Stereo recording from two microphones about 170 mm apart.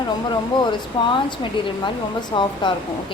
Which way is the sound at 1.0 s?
30° left (ahead or behind).